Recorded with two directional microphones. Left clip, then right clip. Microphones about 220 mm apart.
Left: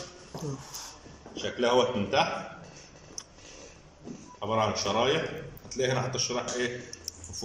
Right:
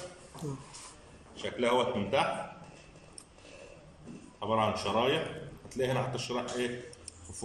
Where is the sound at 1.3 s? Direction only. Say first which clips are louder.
Left 4 dB; centre (ahead or behind).